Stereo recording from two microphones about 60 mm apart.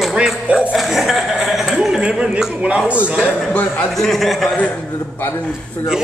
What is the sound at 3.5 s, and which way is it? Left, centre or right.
Speech, left.